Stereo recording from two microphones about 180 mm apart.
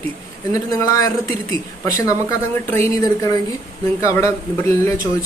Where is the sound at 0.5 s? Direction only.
20° left (ahead or behind).